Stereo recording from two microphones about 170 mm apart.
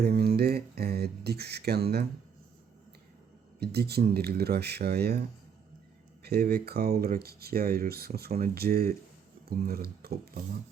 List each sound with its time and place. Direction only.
0.0 s speech: 70° right (ahead or behind)
3.6 s speech: 70° right (ahead or behind)
6.2 s speech: 65° right (ahead or behind)